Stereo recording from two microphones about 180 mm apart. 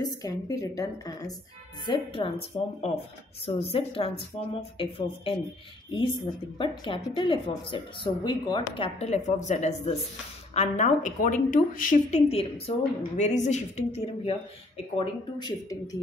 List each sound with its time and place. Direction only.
0.0 s a woman's voice: 20° left (ahead or behind); by 2.7 s 35° left (ahead or behind)
3.7 s a woman's voice: 30° left (ahead or behind); by 12.2 s 50° left (ahead or behind)
12.3 s a woman's voice: 35° left (ahead or behind)
15.0 s speech: 25° left (ahead or behind)